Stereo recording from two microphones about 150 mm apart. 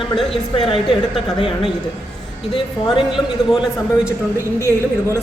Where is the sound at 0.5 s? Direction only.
35° left (ahead or behind).